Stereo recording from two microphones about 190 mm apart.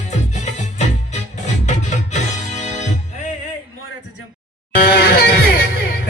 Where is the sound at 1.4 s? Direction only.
40° left (ahead or behind).